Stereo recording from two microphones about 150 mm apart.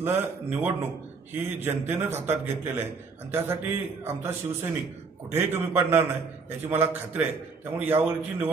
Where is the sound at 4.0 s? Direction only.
15° right (ahead or behind).